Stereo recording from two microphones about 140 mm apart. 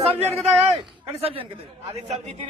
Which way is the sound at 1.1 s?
45° right (ahead or behind).